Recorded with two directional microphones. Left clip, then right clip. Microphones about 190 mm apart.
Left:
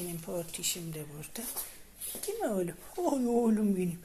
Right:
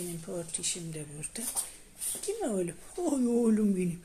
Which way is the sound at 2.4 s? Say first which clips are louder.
Left 2 dB; 20° right (ahead or behind).